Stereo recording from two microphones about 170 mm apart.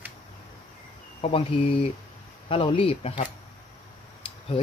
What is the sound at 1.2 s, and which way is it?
Speech, 35° left (ahead or behind).